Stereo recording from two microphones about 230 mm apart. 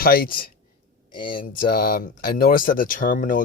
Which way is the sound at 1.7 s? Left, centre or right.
Left.